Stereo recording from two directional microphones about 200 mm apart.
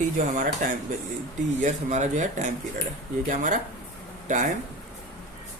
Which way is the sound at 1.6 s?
35° right (ahead or behind).